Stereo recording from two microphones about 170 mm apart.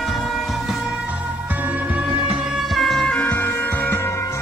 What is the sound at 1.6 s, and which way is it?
Music, 10° right (ahead or behind).